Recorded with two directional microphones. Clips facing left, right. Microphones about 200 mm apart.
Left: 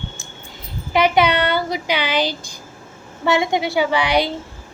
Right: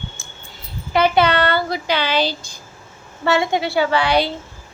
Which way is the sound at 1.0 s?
15° left (ahead or behind).